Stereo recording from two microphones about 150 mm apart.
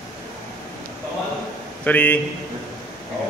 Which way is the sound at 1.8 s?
10° left (ahead or behind).